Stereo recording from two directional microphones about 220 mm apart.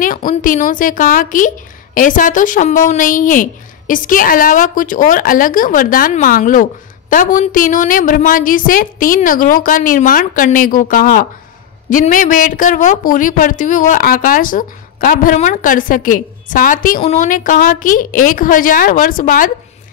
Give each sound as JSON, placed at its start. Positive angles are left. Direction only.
{"t": 0.0, "sound": "speech", "side_deg": 40}